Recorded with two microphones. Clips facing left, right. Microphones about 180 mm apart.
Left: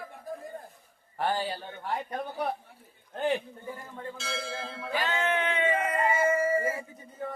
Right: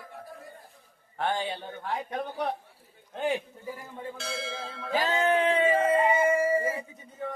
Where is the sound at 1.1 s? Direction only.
5° left (ahead or behind).